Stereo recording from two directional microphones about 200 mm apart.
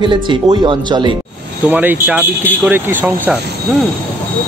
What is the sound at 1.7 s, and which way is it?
Speech, 10° right (ahead or behind).